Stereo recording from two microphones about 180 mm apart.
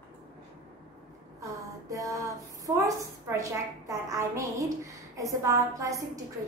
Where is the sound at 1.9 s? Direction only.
20° right (ahead or behind).